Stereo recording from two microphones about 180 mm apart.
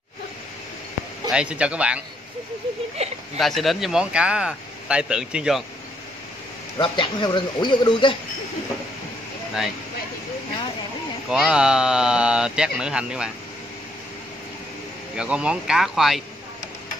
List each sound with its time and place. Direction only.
1.3 s speech: 5° right (ahead or behind)
3.0 s speech: 35° right (ahead or behind)
3.3 s speech: centre (ahead or behind)
6.8 s speech: 25° left (ahead or behind)
11.2 s speech: 5° right (ahead or behind)
15.1 s speech: 5° right (ahead or behind)